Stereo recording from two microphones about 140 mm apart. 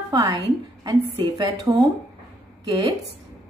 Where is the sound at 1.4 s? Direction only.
25° right (ahead or behind).